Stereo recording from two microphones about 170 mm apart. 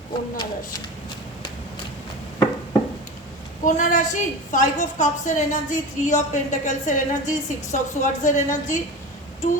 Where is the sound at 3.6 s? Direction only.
45° left (ahead or behind).